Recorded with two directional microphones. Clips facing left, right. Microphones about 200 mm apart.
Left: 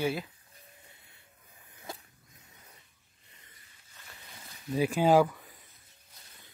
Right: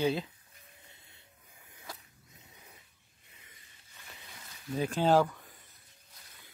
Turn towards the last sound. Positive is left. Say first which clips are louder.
# left 3 dB
turn(degrees=5)  # may be behind; listen again after turning